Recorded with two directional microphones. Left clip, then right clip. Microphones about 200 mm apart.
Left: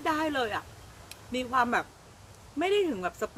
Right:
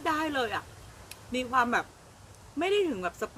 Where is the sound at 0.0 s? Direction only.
10° left (ahead or behind).